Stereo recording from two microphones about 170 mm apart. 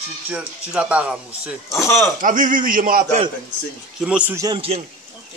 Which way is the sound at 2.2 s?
50° right (ahead or behind).